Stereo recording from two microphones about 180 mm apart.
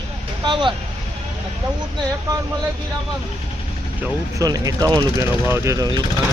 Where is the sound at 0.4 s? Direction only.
25° right (ahead or behind).